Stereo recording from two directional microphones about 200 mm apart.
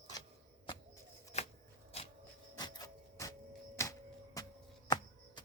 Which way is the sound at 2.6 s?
20° left (ahead or behind).